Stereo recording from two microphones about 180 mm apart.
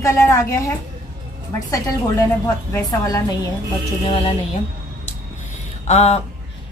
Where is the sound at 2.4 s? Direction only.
20° left (ahead or behind).